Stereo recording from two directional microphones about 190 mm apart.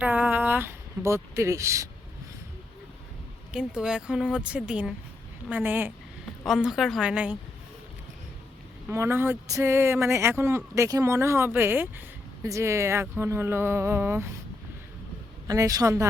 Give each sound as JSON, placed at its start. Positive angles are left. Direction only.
{"t": 0.0, "sound": "speech", "side_deg": -10}
{"t": 3.5, "sound": "speech", "side_deg": -5}
{"t": 8.9, "sound": "speech", "side_deg": -15}
{"t": 15.4, "sound": "speech", "side_deg": -20}